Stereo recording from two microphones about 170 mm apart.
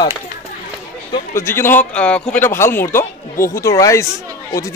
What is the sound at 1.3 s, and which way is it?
A man's voice, 15° left (ahead or behind).